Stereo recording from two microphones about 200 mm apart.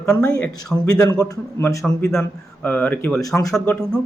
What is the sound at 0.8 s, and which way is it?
A man's voice, 20° left (ahead or behind).